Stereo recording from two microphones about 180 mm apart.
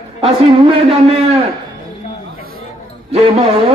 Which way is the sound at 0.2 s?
30° right (ahead or behind).